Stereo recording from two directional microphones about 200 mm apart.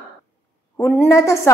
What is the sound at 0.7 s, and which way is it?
Speech, 10° left (ahead or behind).